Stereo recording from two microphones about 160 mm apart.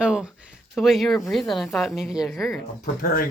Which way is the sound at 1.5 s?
Centre (ahead or behind).